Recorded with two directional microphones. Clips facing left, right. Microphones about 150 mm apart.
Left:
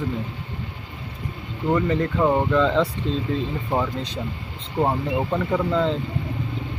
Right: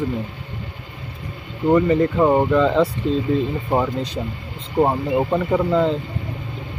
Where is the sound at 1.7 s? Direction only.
10° right (ahead or behind).